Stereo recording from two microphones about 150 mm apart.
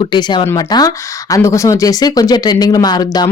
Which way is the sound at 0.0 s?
30° left (ahead or behind).